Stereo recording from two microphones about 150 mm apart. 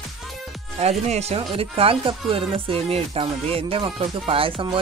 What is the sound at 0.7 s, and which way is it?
Speech, 45° right (ahead or behind).